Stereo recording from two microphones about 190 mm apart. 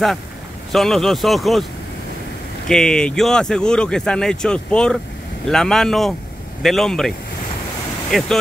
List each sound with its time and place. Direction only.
0.7 s speech: centre (ahead or behind)
2.7 s speech: 5° left (ahead or behind)